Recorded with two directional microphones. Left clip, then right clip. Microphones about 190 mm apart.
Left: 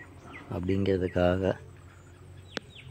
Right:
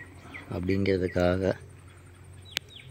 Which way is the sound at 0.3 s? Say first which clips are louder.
Right 1 dB; 5° right (ahead or behind).